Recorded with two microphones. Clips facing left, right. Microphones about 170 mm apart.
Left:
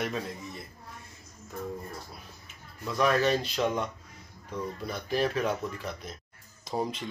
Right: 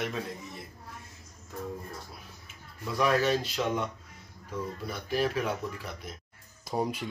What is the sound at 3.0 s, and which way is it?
Speech, 5° right (ahead or behind).